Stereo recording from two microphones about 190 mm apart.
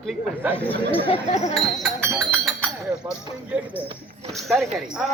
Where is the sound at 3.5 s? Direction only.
5° right (ahead or behind).